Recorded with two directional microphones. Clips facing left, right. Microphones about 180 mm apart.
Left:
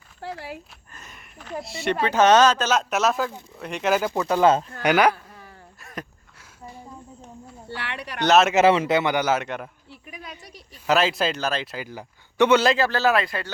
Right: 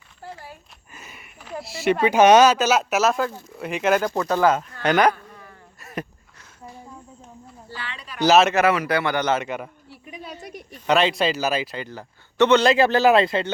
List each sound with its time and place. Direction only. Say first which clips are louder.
0.2 s dog: left 5 dB; 90° left
0.9 s speech: right 1 dB; 5° right (ahead or behind)
2.0 s a man's voice: right 3 dB; 10° right (ahead or behind)
4.2 s speech: even; 15° left (ahead or behind)
4.4 s speech: left 3 dB; 25° left (ahead or behind)
4.8 s speech: right 2 dB; 10° left (ahead or behind)
5.8 s wheeze: right 5 dB; 5° right (ahead or behind)
7.8 s a sound: left 4 dB; 65° left (ahead or behind)
8.2 s a man's voice: right 2 dB; centre (ahead or behind)
8.5 s speech: left 2 dB; 25° left (ahead or behind)
9.2 s a man's voice: right 1 dB; centre (ahead or behind)
10.4 s a sound: right 8 dB; 50° right (ahead or behind)
10.8 s a man's voice: right 2 dB; centre (ahead or behind)
12.7 s speech: right 5 dB; 15° right (ahead or behind)